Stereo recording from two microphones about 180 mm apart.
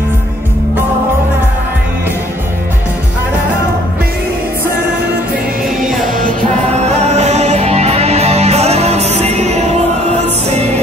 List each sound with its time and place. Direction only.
7.2 s music: 40° right (ahead or behind)